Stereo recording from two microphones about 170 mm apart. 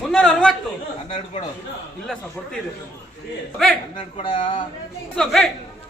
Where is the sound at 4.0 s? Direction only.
35° left (ahead or behind).